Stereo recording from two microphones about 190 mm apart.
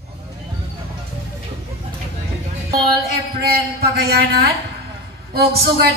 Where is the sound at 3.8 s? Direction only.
55° right (ahead or behind).